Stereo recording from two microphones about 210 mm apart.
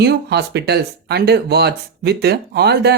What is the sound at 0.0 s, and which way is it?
Speech, 50° right (ahead or behind).